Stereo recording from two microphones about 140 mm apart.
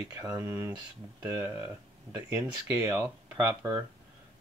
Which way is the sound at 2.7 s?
15° right (ahead or behind).